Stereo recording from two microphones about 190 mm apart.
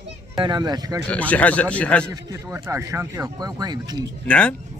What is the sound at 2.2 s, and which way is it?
Speech, 15° right (ahead or behind).